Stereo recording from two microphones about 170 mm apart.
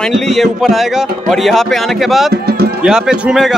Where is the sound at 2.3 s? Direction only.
70° right (ahead or behind).